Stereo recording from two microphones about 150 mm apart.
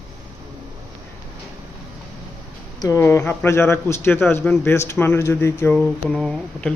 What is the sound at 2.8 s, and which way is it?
A man's voice, 20° left (ahead or behind).